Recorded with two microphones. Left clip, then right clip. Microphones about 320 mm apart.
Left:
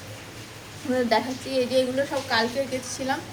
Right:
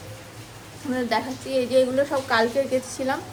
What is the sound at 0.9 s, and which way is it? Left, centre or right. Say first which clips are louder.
A woman's voice: left 2 dB; centre.